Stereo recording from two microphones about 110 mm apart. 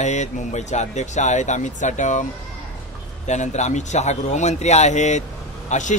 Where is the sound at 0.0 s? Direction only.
90° left.